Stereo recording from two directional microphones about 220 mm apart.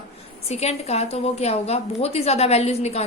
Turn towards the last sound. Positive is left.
turn(degrees=30)  # may be behind; listen again after turning